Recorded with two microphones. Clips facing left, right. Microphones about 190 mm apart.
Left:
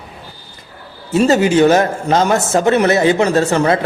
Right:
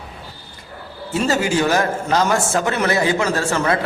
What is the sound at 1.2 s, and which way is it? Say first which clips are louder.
A man's voice: left 7 dB; 20° left (ahead or behind).